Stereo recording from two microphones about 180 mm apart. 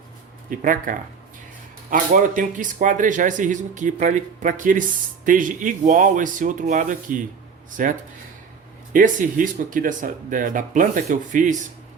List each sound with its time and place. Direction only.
0.5 s speech: 50° right (ahead or behind)